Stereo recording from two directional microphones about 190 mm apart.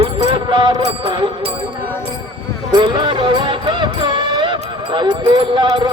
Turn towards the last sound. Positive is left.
turn(degrees=-25)  # may be behind; listen again after turning